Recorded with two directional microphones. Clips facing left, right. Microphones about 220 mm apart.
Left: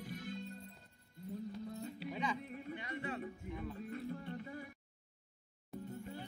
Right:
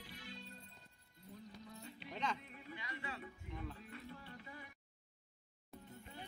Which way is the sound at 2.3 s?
45° left (ahead or behind).